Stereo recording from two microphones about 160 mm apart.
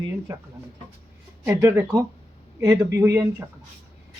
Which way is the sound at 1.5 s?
20° right (ahead or behind).